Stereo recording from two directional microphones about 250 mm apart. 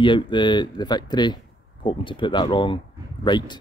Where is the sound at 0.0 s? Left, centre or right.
Centre.